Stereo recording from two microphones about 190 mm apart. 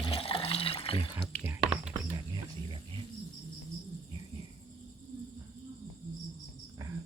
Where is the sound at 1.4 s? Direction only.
10° right (ahead or behind).